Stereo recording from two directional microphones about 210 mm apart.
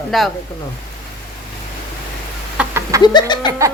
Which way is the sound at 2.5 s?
10° right (ahead or behind).